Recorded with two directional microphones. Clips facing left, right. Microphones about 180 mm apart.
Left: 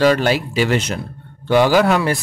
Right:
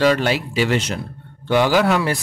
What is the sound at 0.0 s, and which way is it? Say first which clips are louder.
Speech: left 2 dB; 45° left (ahead or behind).